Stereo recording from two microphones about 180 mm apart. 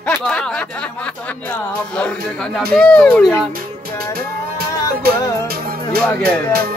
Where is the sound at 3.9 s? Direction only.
55° right (ahead or behind).